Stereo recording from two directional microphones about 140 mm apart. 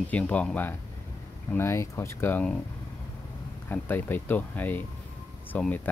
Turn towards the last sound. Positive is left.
turn(degrees=10)  # may be behind; listen again after turning